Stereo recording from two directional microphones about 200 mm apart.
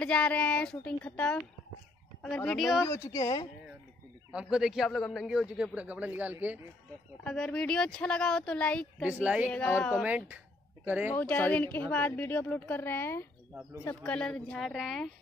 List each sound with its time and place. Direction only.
0.0 s a man's voice: 5° left (ahead or behind)
2.8 s a woman's voice: 15° left (ahead or behind)
4.3 s a man's voice: 5° right (ahead or behind)
7.2 s a man's voice: 5° left (ahead or behind)
9.0 s a woman's voice: 5° right (ahead or behind)
9.5 s a man's voice: 10° left (ahead or behind); by 11.1 s 10° right (ahead or behind)
11.1 s a woman's voice: 5° left (ahead or behind)